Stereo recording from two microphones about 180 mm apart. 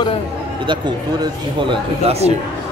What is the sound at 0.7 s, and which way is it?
Speech, 25° right (ahead or behind).